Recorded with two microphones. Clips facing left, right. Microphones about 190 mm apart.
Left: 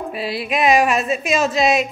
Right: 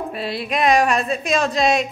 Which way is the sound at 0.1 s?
5° left (ahead or behind).